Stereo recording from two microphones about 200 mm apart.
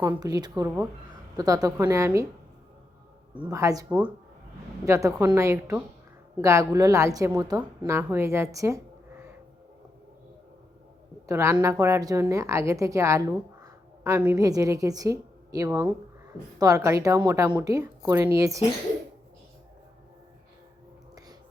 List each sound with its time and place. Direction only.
0.2 s a woman's voice: 20° right (ahead or behind)
3.3 s a woman's voice: 15° right (ahead or behind)
11.3 s a woman's voice: 15° right (ahead or behind)